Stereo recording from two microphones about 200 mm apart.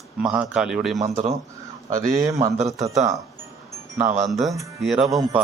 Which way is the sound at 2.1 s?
15° right (ahead or behind).